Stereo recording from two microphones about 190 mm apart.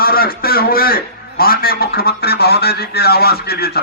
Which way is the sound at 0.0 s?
50° left (ahead or behind).